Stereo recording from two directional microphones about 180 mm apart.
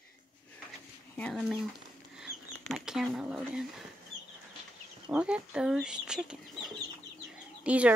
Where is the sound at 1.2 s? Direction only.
5° left (ahead or behind).